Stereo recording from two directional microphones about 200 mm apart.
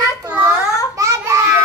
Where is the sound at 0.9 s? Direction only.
15° right (ahead or behind).